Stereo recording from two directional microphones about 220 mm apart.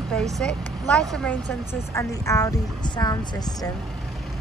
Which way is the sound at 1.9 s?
15° left (ahead or behind).